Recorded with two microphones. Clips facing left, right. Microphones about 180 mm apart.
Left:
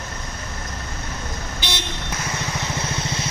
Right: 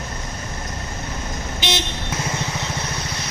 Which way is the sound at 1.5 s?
20° right (ahead or behind).